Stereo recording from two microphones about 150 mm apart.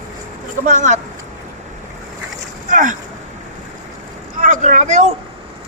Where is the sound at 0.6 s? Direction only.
55° right (ahead or behind).